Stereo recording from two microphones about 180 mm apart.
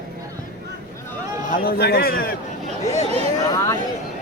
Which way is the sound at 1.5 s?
60° left (ahead or behind).